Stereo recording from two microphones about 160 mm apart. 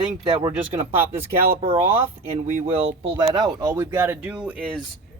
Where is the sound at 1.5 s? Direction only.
35° right (ahead or behind).